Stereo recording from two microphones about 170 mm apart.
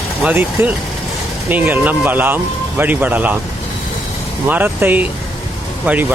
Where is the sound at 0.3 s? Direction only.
10° right (ahead or behind).